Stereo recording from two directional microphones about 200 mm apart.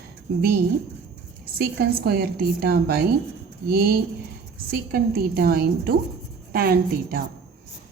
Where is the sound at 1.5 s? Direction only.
50° right (ahead or behind).